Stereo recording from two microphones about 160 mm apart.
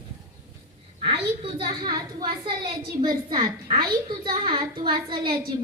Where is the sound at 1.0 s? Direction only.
35° right (ahead or behind).